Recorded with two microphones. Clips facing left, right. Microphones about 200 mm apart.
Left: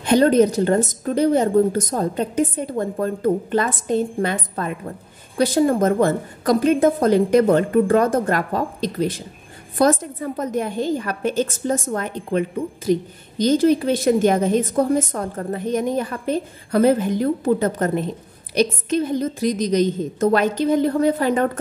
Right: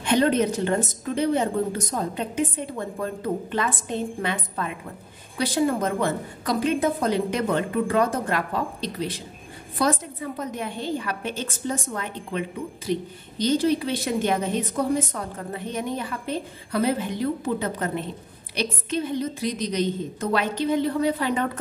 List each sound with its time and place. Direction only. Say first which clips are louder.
0.0 s a woman's voice: left 6 dB; 40° left (ahead or behind)